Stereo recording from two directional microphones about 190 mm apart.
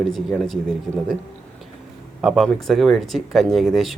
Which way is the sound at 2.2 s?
Centre (ahead or behind).